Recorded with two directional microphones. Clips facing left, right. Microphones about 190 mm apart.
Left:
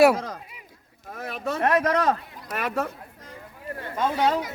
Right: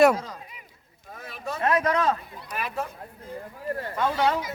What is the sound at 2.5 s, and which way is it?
Speech, 85° left.